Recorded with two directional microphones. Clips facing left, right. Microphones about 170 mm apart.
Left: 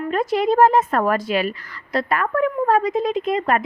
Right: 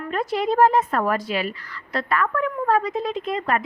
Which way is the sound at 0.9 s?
45° left (ahead or behind).